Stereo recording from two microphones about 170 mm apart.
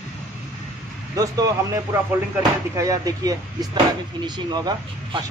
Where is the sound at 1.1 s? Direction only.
20° right (ahead or behind).